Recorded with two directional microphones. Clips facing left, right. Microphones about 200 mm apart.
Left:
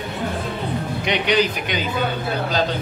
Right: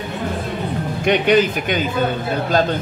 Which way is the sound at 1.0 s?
50° right (ahead or behind).